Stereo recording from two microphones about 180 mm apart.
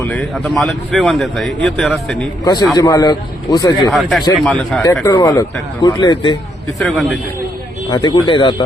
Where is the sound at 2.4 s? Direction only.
20° left (ahead or behind).